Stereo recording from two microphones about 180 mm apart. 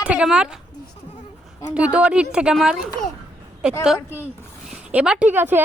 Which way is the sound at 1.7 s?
5° right (ahead or behind).